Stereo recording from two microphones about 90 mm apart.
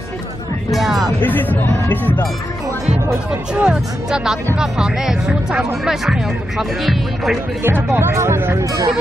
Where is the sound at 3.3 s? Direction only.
10° right (ahead or behind).